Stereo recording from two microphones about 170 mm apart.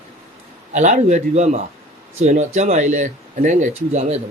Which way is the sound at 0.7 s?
45° right (ahead or behind).